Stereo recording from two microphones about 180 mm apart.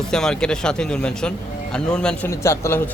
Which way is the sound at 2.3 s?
15° left (ahead or behind).